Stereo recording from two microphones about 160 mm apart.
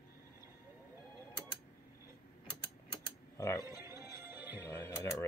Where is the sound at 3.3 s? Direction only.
20° left (ahead or behind).